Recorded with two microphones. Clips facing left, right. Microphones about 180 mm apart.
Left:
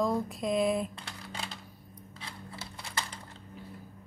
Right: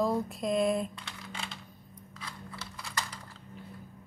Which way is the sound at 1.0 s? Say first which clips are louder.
Left 1 dB; 35° left (ahead or behind).